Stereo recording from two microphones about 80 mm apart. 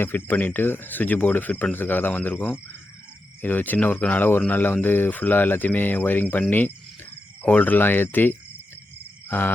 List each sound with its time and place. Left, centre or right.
0.0 s speech: left